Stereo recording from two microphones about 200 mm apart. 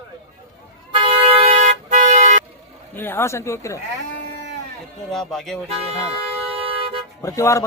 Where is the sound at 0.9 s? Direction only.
25° right (ahead or behind).